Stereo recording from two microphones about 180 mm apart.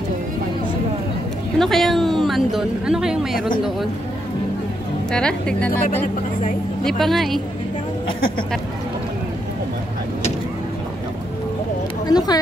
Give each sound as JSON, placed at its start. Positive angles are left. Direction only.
{"t": 1.6, "sound": "speech", "side_deg": 0}
{"t": 5.1, "sound": "speech", "side_deg": 5}
{"t": 12.1, "sound": "speech", "side_deg": 20}